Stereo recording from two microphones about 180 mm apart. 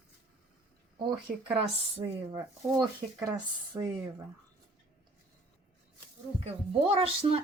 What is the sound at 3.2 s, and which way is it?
Speech, 15° right (ahead or behind).